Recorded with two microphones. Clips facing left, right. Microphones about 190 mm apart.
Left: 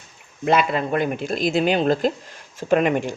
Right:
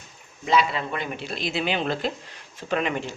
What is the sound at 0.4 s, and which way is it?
Speech, 55° left (ahead or behind).